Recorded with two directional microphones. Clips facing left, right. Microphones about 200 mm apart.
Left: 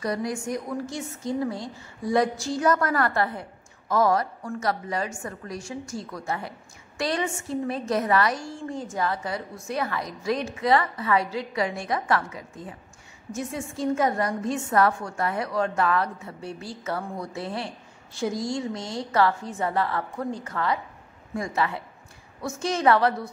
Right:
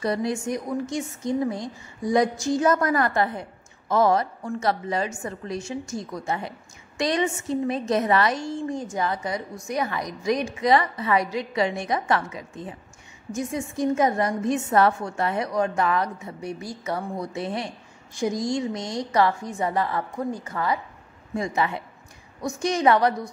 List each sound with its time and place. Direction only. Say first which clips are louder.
0.0 s a woman's voice: right 3 dB; 25° right (ahead or behind)